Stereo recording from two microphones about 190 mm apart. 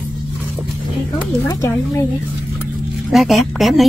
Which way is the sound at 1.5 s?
15° left (ahead or behind).